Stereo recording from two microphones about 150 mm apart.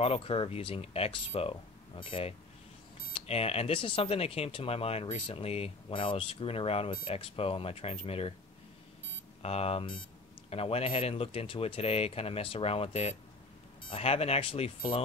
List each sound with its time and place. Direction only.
0.0 s speech: 40° left (ahead or behind)
9.4 s speech: 40° left (ahead or behind)